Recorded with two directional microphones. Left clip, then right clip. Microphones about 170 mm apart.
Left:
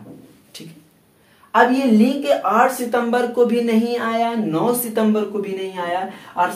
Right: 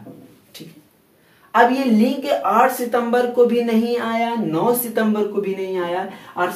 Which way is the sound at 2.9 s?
30° left (ahead or behind).